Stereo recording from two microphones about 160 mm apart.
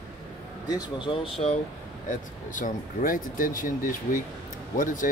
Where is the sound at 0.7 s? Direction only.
30° left (ahead or behind).